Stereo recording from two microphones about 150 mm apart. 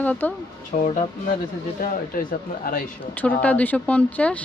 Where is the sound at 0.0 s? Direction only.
10° left (ahead or behind).